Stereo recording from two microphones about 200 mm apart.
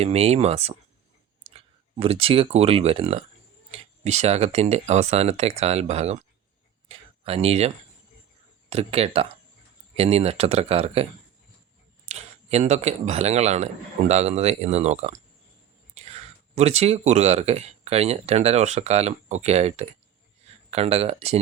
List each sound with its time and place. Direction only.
0.0 s speech: 30° right (ahead or behind)
6.8 s a sound: 30° right (ahead or behind)
8.7 s speech: 30° right (ahead or behind)
12.0 s speech: 35° right (ahead or behind)